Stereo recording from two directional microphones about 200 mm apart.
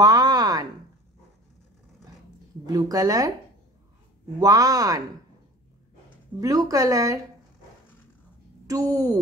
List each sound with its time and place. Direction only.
0.0 s a sound: 20° right (ahead or behind)
2.6 s a woman's voice: 20° right (ahead or behind)
4.4 s a woman's voice: 15° right (ahead or behind)
6.4 s a woman's voice: 15° right (ahead or behind)
8.6 s a woman's voice: 15° right (ahead or behind)